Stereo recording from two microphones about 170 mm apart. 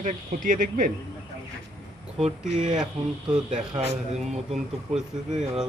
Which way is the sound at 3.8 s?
40° right (ahead or behind).